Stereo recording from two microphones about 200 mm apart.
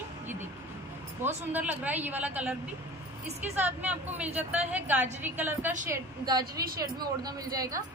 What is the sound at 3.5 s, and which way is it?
A woman's voice, 10° right (ahead or behind).